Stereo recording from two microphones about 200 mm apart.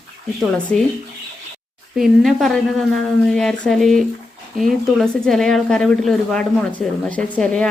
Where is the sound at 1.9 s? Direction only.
Centre (ahead or behind).